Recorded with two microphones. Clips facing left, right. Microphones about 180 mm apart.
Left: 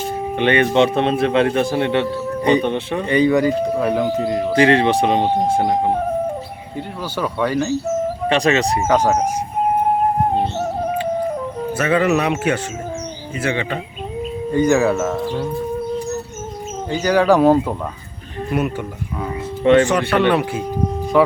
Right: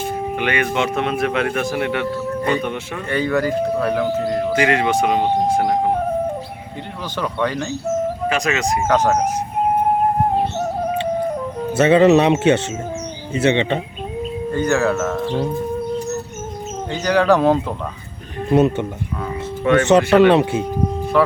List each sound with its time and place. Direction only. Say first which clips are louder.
0.3 s speech: left 7 dB; 30° left (ahead or behind)
4.5 s speech: left 5 dB; 30° left (ahead or behind)
7.2 s speech: left 2 dB; 10° left (ahead or behind)
8.3 s speech: left 7 dB; 30° left (ahead or behind)
8.9 s speech: even; 10° left (ahead or behind)
10.3 s music: even; centre (ahead or behind)
11.8 s speech: right 6 dB; 25° right (ahead or behind)
14.5 s speech: left 3 dB; 10° left (ahead or behind)
16.9 s speech: left 1 dB; 10° left (ahead or behind)
18.5 s speech: right 6 dB; 25° right (ahead or behind)
21.1 s speech: left 2 dB; 15° left (ahead or behind)